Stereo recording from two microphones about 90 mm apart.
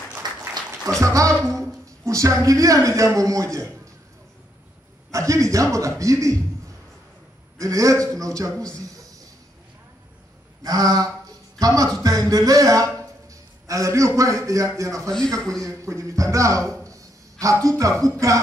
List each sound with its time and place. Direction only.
0.2 s a sound: 50° right (ahead or behind)
1.0 s a man's voice: 35° right (ahead or behind)
5.1 s a man's voice: 35° right (ahead or behind)
7.5 s a man's voice: 35° right (ahead or behind)
8.7 s a sound: 40° right (ahead or behind)
10.6 s a man's voice: 45° right (ahead or behind)
15.0 s a man's voice: 5° left (ahead or behind)
15.6 s a man's voice: 35° right (ahead or behind)
16.8 s a sound: 35° right (ahead or behind)